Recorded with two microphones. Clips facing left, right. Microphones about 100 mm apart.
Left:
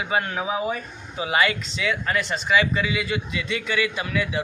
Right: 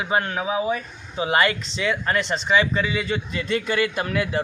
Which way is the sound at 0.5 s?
15° right (ahead or behind).